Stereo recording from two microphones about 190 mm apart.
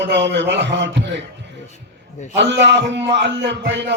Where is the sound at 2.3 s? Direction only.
65° right (ahead or behind).